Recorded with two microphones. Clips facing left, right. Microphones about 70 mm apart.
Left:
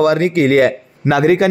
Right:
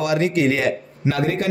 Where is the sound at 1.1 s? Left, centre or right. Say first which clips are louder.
Left 11 dB; left.